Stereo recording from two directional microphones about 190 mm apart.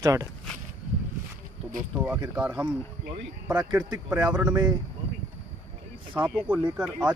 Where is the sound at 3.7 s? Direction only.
20° right (ahead or behind).